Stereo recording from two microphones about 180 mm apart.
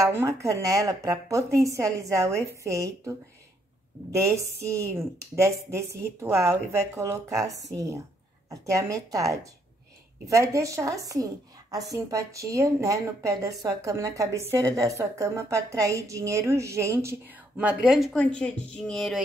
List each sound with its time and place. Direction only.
0.0 s a woman's voice: 15° right (ahead or behind); by 19.2 s centre (ahead or behind)